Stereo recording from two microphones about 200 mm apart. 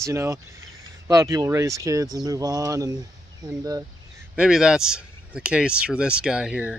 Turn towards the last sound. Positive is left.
turn(degrees=-5)  # may be behind; listen again after turning